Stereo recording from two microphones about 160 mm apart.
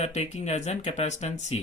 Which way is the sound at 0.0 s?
45° left (ahead or behind).